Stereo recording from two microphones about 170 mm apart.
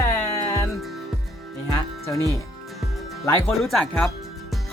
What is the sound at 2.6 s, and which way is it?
Music, centre (ahead or behind).